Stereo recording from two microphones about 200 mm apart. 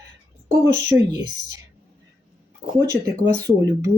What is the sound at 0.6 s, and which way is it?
Speech, 15° right (ahead or behind).